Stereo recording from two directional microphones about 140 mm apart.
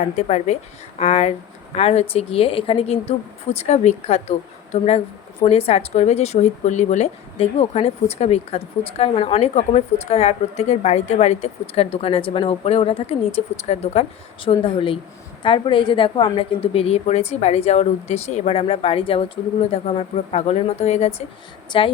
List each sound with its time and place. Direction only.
0.2 s a woman's voice: 50° left (ahead or behind)
21.7 s speech: 40° left (ahead or behind)